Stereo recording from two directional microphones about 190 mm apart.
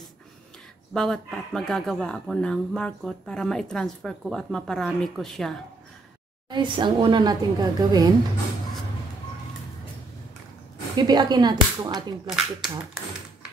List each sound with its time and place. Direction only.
0.9 s speech: 5° left (ahead or behind)
6.5 s a woman's voice: 25° right (ahead or behind)
11.0 s a woman's voice: 20° right (ahead or behind)
12.3 s speech: centre (ahead or behind)